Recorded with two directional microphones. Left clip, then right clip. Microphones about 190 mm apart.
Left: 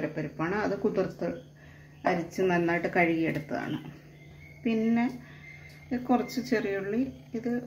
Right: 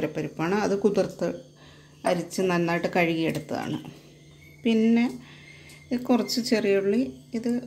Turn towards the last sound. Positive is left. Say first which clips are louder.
# right 4 dB
turn(degrees=-60)  # may be behind; listen again after turning